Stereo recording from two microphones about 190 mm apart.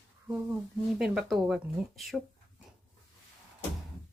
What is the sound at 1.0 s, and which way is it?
Speech, centre (ahead or behind).